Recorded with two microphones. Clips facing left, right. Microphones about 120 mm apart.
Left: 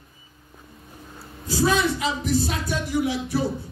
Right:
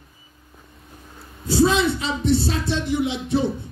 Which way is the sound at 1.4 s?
25° right (ahead or behind).